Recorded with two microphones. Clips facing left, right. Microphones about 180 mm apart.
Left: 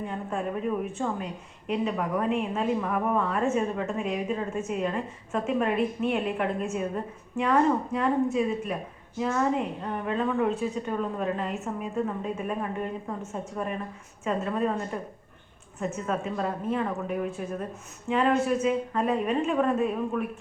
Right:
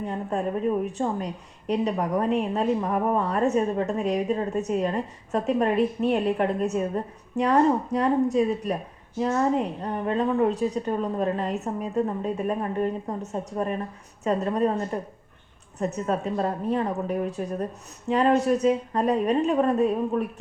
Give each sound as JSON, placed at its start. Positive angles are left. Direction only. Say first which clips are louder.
{"t": 0.1, "sound": "a woman's voice", "louder": "right 6 dB", "side_deg": -35}